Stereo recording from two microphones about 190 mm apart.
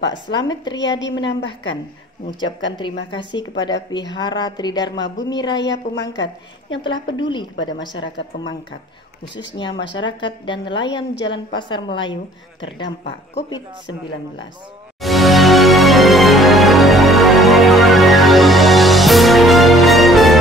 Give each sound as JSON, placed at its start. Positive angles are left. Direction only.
{"t": 0.0, "sound": "a woman's voice", "side_deg": 70}
{"t": 3.1, "sound": "a woman's voice", "side_deg": 25}
{"t": 5.6, "sound": "a woman's voice", "side_deg": 70}
{"t": 6.7, "sound": "a woman's voice", "side_deg": 25}
{"t": 9.6, "sound": "a woman's voice", "side_deg": 25}
{"t": 15.0, "sound": "music", "side_deg": 0}